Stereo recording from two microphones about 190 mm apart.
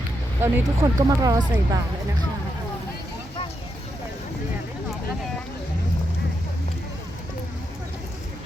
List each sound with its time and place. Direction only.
0.3 s speech: 10° right (ahead or behind)